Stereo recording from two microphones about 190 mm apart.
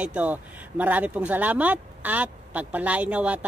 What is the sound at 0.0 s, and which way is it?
Speech, 10° right (ahead or behind).